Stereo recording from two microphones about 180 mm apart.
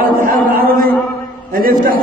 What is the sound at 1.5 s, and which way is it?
Chant, 55° right (ahead or behind).